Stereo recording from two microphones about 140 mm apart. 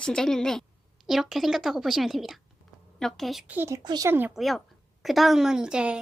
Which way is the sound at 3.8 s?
30° right (ahead or behind).